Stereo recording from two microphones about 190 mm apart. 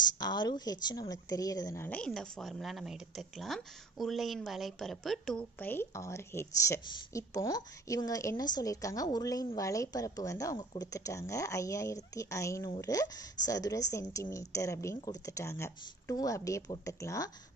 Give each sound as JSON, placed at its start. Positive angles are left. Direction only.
{"t": 0.2, "sound": "a woman's voice", "side_deg": 25}